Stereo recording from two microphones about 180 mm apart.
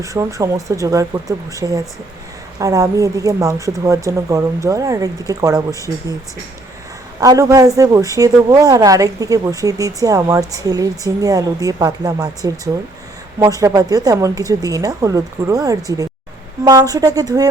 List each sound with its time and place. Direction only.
0.0 s speech: 15° right (ahead or behind)
7.2 s speech: 20° right (ahead or behind)